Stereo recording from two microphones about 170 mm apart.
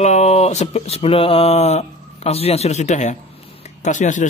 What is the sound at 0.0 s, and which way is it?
Speech, 40° left (ahead or behind).